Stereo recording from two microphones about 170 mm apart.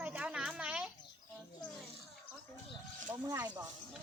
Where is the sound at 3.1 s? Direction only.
15° right (ahead or behind).